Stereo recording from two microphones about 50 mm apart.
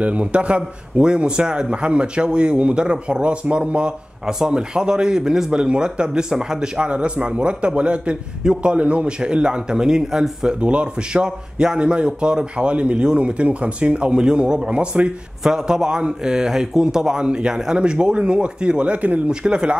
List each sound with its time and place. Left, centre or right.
0.0 s a man's voice: right